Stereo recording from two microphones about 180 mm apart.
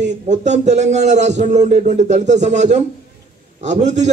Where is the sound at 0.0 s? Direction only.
40° right (ahead or behind).